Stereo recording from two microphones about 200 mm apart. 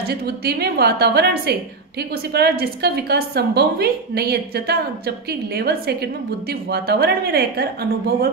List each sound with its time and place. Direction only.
0.0 s a woman's voice: 50° right (ahead or behind)